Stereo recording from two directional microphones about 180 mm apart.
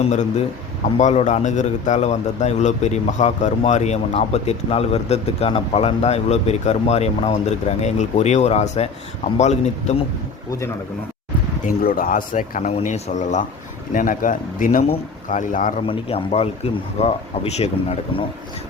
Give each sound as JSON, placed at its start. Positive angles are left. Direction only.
{"t": 0.0, "sound": "a man's voice", "side_deg": 40}
{"t": 11.6, "sound": "speech", "side_deg": 55}
{"t": 15.9, "sound": "a man's voice", "side_deg": 30}